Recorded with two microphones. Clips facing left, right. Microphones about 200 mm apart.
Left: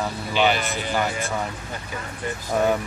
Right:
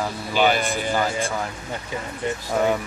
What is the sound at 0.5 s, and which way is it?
Speech, 50° right (ahead or behind).